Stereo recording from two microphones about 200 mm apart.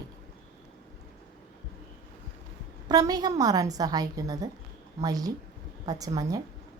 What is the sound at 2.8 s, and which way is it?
A woman's voice, 20° right (ahead or behind).